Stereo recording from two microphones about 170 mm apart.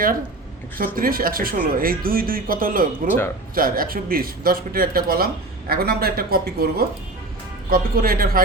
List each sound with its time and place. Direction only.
0.8 s speech: 55° right (ahead or behind)